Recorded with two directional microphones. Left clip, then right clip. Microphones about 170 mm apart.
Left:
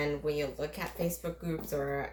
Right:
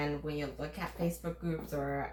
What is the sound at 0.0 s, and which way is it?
Speech, 50° left (ahead or behind).